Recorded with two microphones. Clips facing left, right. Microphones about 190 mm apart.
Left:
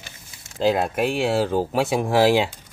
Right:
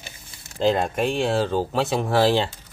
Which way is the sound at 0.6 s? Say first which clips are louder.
Left 1 dB; 5° left (ahead or behind).